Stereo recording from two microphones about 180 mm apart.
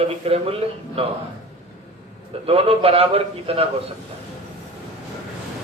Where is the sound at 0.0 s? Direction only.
35° right (ahead or behind).